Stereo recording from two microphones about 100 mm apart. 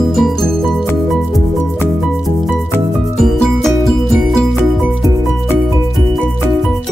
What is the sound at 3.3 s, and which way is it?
Music, 5° left (ahead or behind).